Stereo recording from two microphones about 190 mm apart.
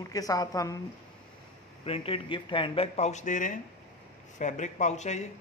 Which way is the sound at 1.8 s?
30° left (ahead or behind).